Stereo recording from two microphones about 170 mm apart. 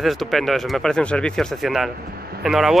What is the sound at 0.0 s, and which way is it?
Speech, centre (ahead or behind).